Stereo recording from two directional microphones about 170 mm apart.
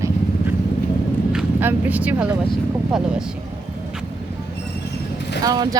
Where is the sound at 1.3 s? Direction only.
10° right (ahead or behind).